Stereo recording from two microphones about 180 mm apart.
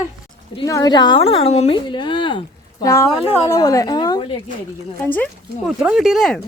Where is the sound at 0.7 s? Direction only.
20° left (ahead or behind).